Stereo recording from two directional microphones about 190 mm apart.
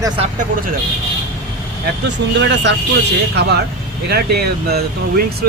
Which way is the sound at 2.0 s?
65° right (ahead or behind).